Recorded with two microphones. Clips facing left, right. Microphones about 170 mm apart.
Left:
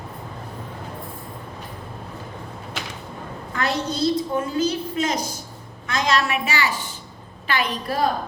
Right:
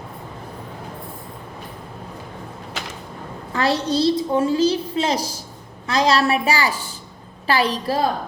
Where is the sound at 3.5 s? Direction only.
30° right (ahead or behind).